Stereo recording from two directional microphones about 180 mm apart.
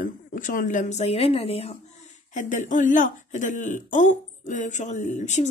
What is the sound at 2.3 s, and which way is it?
Speech, 45° left (ahead or behind).